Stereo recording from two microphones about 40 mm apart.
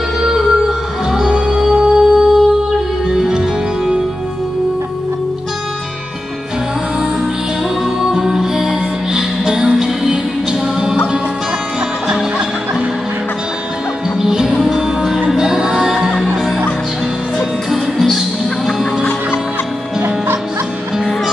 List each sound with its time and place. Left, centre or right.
0.2 s music: centre
7.8 s music: centre
14.1 s music: centre
17.4 s music: centre